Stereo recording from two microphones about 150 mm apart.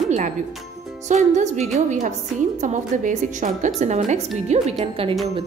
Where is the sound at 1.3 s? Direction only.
50° right (ahead or behind).